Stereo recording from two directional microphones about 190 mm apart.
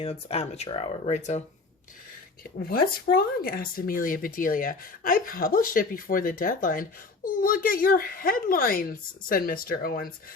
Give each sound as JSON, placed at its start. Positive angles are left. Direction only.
{"t": 0.0, "sound": "speech", "side_deg": 30}
{"t": 2.6, "sound": "speech", "side_deg": 50}